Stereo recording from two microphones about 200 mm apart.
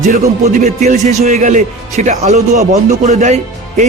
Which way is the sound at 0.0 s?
40° right (ahead or behind).